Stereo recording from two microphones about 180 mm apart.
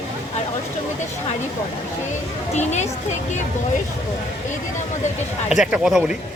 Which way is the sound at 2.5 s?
40° left (ahead or behind).